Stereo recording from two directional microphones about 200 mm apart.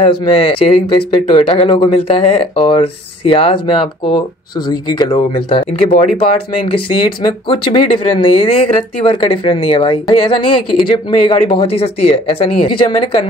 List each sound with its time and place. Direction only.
0.0 s speech: 25° left (ahead or behind)